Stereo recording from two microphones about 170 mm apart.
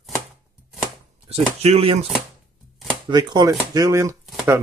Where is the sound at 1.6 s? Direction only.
35° right (ahead or behind).